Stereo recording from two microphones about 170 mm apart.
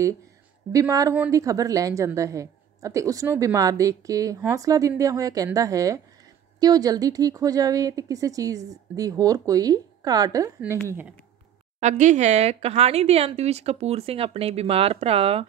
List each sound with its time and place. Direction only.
0.7 s a woman's voice: 20° right (ahead or behind)
11.8 s speech: 45° right (ahead or behind)